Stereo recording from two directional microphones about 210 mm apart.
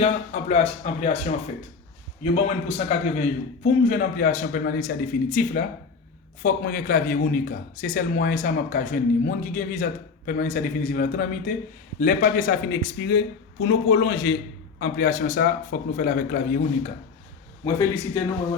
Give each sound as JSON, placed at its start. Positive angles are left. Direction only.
{"t": 0.0, "sound": "a man's voice", "side_deg": 30}
{"t": 17.7, "sound": "speech", "side_deg": 15}